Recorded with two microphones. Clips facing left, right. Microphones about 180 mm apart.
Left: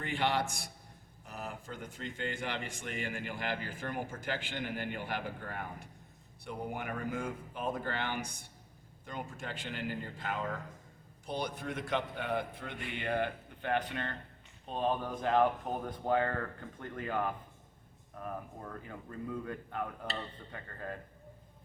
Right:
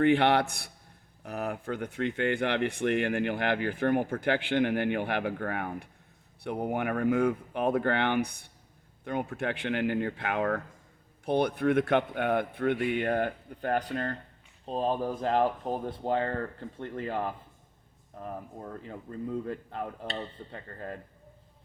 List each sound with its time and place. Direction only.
0.0 s speech: 65° right (ahead or behind); by 20.9 s 30° right (ahead or behind)